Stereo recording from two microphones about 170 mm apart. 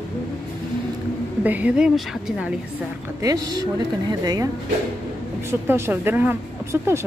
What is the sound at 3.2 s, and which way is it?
Speech, 20° right (ahead or behind).